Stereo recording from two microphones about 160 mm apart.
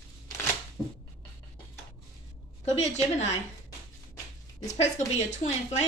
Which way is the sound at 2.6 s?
45° left (ahead or behind).